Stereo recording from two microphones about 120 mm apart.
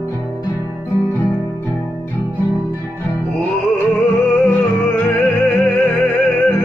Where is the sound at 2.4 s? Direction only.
20° left (ahead or behind).